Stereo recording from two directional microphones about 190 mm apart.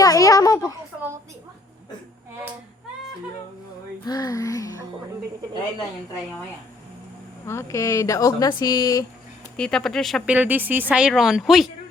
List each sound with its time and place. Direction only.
0.0 s a woman's voice: 20° left (ahead or behind)
4.0 s a sound: 20° left (ahead or behind)
7.4 s speech: 15° left (ahead or behind)
9.6 s speech: 5° left (ahead or behind)